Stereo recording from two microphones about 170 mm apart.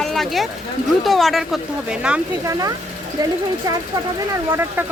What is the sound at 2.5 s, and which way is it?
Speech, 20° right (ahead or behind).